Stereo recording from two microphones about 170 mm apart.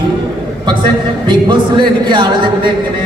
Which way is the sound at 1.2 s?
25° right (ahead or behind).